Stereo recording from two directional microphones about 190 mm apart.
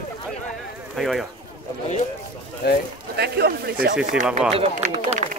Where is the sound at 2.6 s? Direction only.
60° left (ahead or behind).